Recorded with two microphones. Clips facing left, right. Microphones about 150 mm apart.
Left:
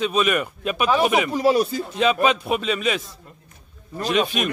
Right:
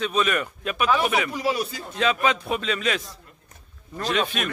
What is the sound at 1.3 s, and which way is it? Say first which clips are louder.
Speech: left 7 dB; 40° left (ahead or behind).